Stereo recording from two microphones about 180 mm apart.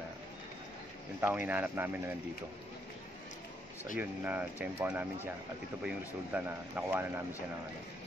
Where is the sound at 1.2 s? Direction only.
10° right (ahead or behind).